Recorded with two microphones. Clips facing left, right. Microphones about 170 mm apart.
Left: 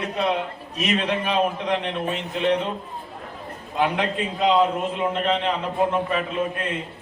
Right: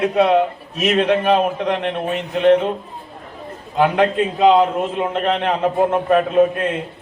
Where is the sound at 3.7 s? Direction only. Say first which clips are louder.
Right 7 dB; 55° right (ahead or behind).